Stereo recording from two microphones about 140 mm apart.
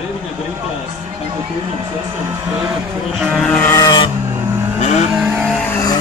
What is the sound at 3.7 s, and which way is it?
Vehicle, 25° left (ahead or behind).